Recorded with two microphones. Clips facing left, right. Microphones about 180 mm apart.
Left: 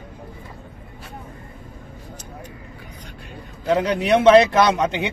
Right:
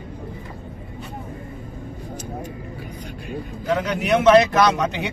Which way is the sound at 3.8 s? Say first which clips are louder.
Left 2 dB; 30° left (ahead or behind).